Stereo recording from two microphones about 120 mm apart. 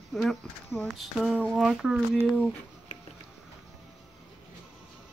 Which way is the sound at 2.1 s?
10° right (ahead or behind).